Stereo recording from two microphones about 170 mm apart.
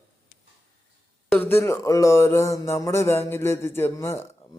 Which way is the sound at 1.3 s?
10° left (ahead or behind).